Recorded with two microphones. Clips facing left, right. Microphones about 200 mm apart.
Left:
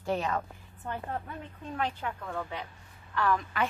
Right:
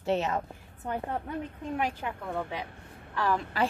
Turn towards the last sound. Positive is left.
turn(degrees=-30)  # may be behind; listen again after turning